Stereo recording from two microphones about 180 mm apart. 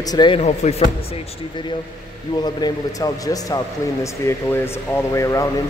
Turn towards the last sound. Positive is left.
turn(degrees=20)  # may be behind; listen again after turning